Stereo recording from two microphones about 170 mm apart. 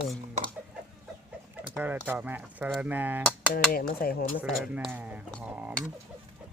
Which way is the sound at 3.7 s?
60° left (ahead or behind).